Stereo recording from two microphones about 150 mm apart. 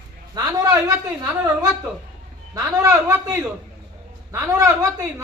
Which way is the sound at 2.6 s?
20° right (ahead or behind).